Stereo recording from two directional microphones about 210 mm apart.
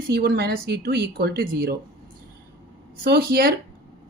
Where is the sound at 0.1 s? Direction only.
50° right (ahead or behind).